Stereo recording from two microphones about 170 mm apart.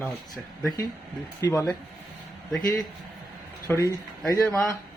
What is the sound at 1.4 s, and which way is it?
Speech, 20° left (ahead or behind).